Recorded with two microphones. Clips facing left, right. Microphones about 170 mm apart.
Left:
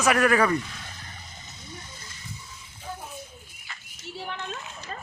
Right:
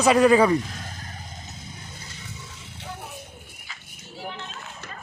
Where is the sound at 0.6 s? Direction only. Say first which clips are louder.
Right 4 dB; 40° right (ahead or behind).